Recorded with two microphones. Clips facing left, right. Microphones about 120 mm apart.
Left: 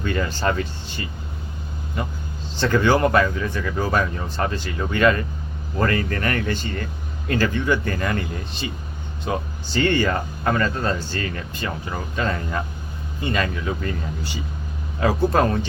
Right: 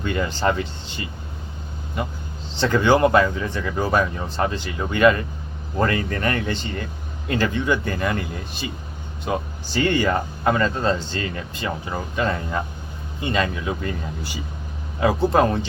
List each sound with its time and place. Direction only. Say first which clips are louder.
0.0 s speech: right 1 dB; 15° right (ahead or behind)
2.6 s speech: right 1 dB; 15° right (ahead or behind)